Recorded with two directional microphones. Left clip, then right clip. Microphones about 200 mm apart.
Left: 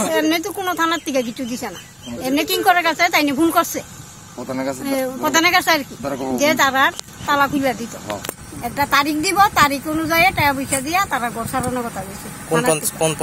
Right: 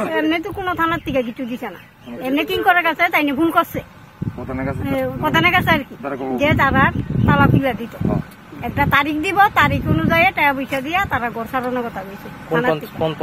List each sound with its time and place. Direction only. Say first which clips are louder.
0.1 s speech: left 1 dB; centre (ahead or behind)
4.5 s speech: left 2 dB; 45° left (ahead or behind)
4.8 s speech: right 1 dB; centre (ahead or behind)
12.4 s speech: even; centre (ahead or behind)